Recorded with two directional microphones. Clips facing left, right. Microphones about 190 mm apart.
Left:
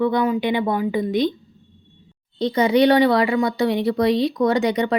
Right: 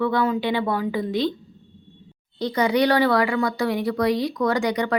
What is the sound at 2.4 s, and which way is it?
Speech, 25° left (ahead or behind).